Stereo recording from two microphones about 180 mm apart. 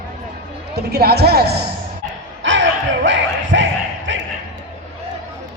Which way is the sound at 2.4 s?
90° right.